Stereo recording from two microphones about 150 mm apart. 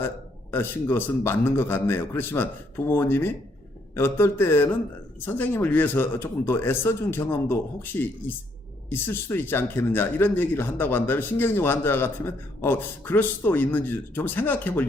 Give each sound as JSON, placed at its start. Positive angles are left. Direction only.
{"t": 0.5, "sound": "speech", "side_deg": 15}